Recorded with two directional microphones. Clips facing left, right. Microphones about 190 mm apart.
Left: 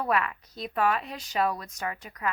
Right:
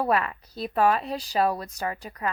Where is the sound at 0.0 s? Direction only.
35° right (ahead or behind).